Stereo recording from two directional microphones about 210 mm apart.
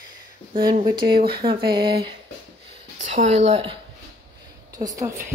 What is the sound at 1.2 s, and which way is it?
Speech, 45° right (ahead or behind).